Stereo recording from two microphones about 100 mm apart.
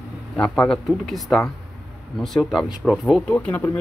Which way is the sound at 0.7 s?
Centre (ahead or behind).